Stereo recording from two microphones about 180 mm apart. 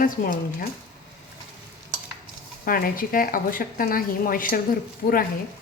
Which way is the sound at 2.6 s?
55° left (ahead or behind).